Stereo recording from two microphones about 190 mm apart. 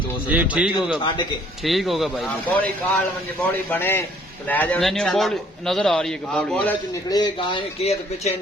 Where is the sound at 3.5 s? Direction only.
10° left (ahead or behind).